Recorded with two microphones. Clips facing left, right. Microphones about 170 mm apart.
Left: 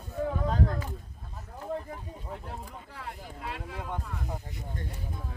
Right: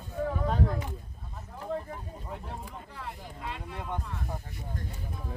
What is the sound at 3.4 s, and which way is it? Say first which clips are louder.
Speech: left 1 dB; 5° left (ahead or behind).